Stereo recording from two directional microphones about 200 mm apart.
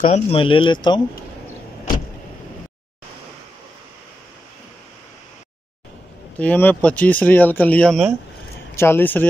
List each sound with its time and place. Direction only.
0.1 s speech: 25° left (ahead or behind)
6.3 s speech: 10° left (ahead or behind)